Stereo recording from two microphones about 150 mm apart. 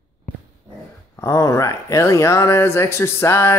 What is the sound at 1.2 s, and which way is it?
Speech, 20° left (ahead or behind).